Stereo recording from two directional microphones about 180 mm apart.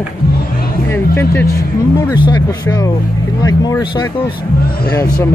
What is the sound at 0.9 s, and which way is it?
Speech, 15° left (ahead or behind).